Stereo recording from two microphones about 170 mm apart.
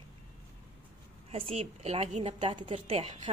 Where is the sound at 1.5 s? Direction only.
35° right (ahead or behind).